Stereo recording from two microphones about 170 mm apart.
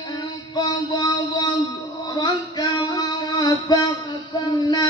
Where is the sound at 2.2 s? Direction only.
25° left (ahead or behind).